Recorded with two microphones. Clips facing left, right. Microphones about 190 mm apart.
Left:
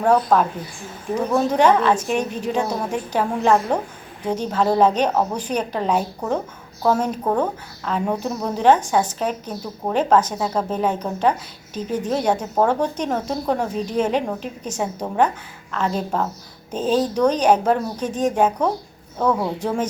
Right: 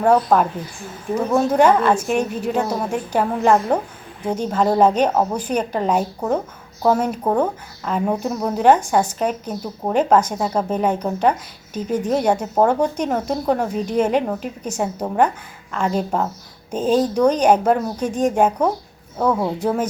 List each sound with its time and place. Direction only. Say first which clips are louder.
0.0 s a woman's voice: right 1 dB; 5° right (ahead or behind)